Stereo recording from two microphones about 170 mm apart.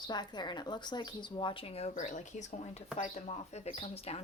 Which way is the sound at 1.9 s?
50° left (ahead or behind).